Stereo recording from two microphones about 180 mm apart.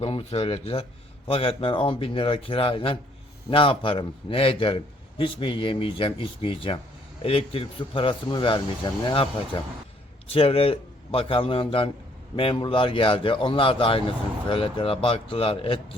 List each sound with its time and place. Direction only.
0.0 s a man's voice: 30° left (ahead or behind)
10.3 s a man's voice: 30° left (ahead or behind)